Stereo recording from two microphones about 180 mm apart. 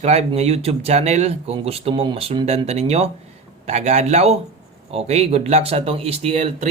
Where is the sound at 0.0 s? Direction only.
35° right (ahead or behind).